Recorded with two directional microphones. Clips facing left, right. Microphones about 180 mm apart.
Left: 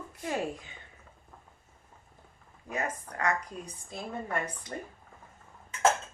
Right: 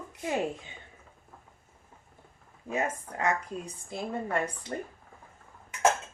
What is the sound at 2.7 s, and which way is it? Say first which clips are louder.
Speech: right 3 dB; 25° right (ahead or behind).